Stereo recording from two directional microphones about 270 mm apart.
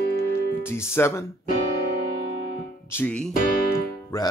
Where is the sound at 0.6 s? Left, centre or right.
Centre.